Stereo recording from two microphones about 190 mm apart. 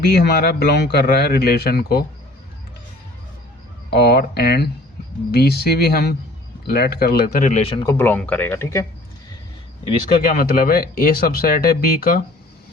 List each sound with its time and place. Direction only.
0.2 s a man's voice: 55° left (ahead or behind)
3.8 s a man's voice: 55° left (ahead or behind); by 7.9 s 30° left (ahead or behind)
7.9 s speech: 10° left (ahead or behind)
10.2 s speech: 50° left (ahead or behind)